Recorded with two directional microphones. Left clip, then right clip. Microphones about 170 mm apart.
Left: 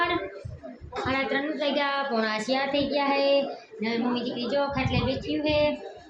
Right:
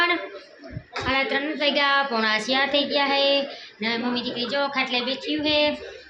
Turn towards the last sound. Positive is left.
turn(degrees=-5)  # may be behind; listen again after turning